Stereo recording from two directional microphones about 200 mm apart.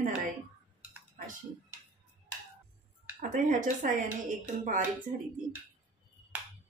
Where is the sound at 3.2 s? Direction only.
40° right (ahead or behind).